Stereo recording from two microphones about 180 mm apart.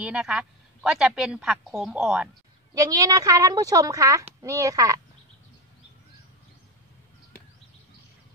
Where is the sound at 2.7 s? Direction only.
20° right (ahead or behind).